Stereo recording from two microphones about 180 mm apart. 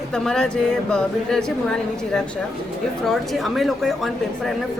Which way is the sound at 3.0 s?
Centre (ahead or behind).